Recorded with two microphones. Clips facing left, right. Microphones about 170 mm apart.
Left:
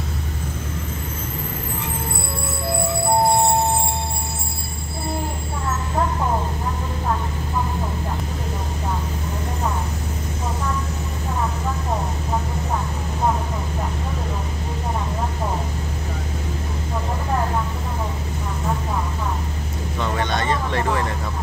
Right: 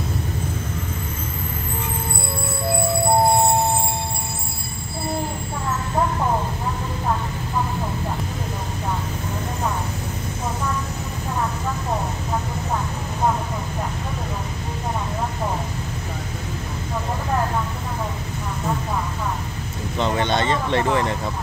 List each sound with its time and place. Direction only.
20.0 s vehicle: 25° right (ahead or behind)